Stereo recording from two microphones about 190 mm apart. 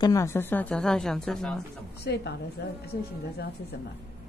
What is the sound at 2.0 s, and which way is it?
Speech, 60° left (ahead or behind).